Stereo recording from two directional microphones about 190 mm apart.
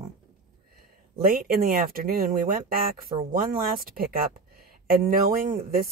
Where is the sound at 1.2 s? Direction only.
50° right (ahead or behind).